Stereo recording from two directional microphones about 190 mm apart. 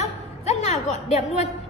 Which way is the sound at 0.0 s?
35° left (ahead or behind).